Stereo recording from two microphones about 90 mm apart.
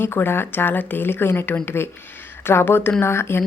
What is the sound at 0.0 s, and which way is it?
A woman's voice, 25° left (ahead or behind).